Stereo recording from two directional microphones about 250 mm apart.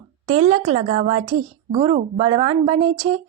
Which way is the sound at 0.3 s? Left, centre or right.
Right.